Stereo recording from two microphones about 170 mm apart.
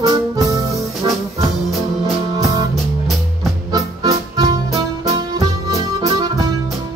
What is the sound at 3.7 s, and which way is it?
Music, 25° right (ahead or behind).